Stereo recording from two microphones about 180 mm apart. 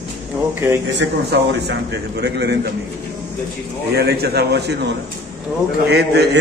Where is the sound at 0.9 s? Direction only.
65° right (ahead or behind).